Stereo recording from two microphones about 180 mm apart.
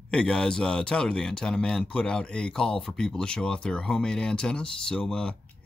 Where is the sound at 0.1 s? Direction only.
5° left (ahead or behind).